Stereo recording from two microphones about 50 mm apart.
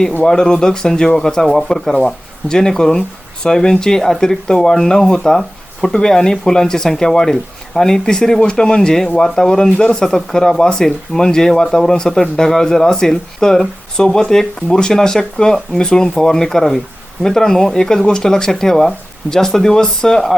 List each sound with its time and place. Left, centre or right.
0.3 s speech: centre